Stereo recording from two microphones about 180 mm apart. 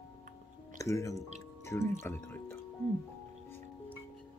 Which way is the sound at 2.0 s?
15° left (ahead or behind).